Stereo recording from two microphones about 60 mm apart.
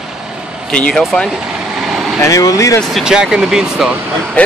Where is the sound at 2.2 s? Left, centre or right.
Left.